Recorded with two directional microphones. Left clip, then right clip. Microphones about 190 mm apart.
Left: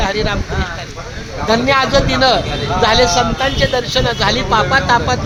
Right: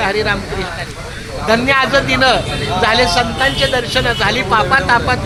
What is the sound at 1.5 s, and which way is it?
A man's voice, 15° right (ahead or behind).